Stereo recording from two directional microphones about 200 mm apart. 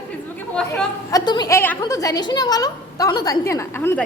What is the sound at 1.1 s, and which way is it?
A woman's voice, 20° left (ahead or behind).